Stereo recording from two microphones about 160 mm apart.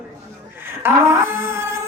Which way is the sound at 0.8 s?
15° right (ahead or behind).